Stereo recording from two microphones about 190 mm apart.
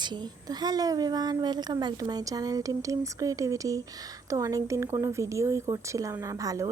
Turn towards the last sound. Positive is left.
turn(degrees=-15)  # may be behind; listen again after turning